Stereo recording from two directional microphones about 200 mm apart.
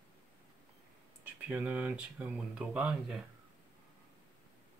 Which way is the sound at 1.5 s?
10° right (ahead or behind).